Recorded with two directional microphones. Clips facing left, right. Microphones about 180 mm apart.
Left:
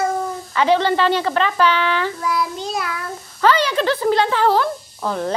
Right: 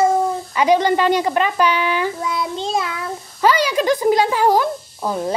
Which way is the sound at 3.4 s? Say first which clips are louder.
Even; 10° right (ahead or behind).